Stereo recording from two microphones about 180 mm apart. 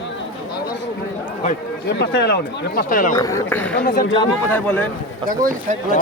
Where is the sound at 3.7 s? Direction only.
55° left (ahead or behind).